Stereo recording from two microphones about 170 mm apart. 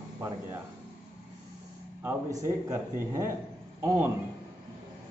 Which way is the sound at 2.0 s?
15° right (ahead or behind).